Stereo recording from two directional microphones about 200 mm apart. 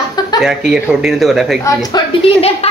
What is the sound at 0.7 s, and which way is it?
Speech, 5° right (ahead or behind).